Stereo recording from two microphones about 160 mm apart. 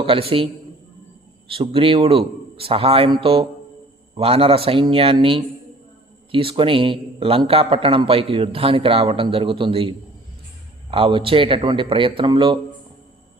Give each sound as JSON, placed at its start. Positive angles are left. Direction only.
{"t": 0.0, "sound": "a man's voice", "side_deg": -35}
{"t": 10.9, "sound": "a man's voice", "side_deg": -35}